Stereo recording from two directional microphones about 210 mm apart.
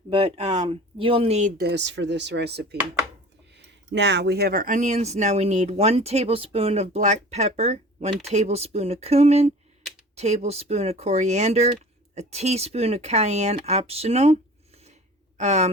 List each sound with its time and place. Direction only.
0.1 s speech: 25° right (ahead or behind)
1.6 s speech: 55° right (ahead or behind)
3.9 s speech: 55° right (ahead or behind); by 14.3 s 30° right (ahead or behind)
15.4 s speech: 35° right (ahead or behind)